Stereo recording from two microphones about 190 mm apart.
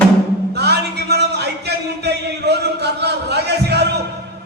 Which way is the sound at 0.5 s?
60° right (ahead or behind).